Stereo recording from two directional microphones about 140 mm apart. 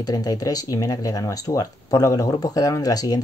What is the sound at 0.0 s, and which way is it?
Speech, 25° left (ahead or behind).